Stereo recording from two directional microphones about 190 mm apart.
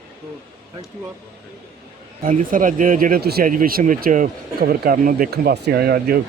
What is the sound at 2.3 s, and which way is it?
Speech, 45° right (ahead or behind).